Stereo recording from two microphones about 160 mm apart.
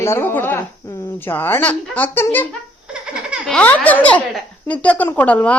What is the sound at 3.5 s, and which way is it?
A woman's voice, 10° left (ahead or behind).